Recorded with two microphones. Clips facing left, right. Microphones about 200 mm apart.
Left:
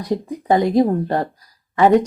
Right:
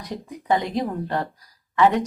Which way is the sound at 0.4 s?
40° left (ahead or behind).